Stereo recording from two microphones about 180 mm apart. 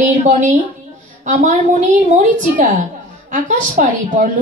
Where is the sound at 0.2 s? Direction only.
40° right (ahead or behind).